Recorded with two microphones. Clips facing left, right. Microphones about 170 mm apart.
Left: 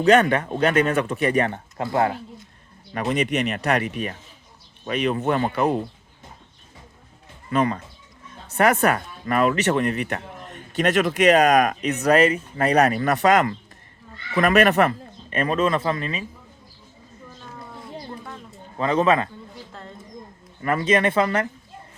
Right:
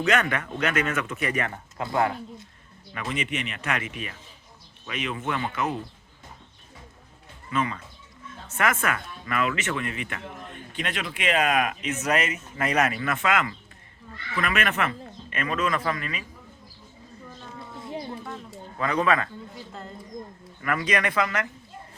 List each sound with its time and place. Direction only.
0.0 s speech: 35° left (ahead or behind)
2.9 s speech: 40° left (ahead or behind)
7.5 s speech: 40° left (ahead or behind)
17.7 s a sound: centre (ahead or behind)
18.8 s speech: 25° left (ahead or behind)
20.6 s speech: 30° left (ahead or behind)